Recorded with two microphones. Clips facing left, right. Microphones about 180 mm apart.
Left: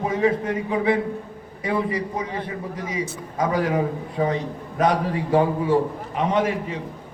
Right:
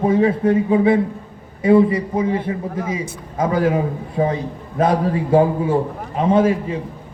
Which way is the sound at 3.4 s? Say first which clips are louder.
Right 4 dB; 25° right (ahead or behind).